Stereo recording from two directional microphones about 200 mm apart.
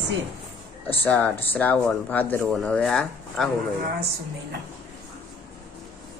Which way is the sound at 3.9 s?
50° right (ahead or behind).